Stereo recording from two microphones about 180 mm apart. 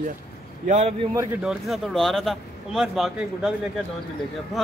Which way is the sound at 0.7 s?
40° right (ahead or behind).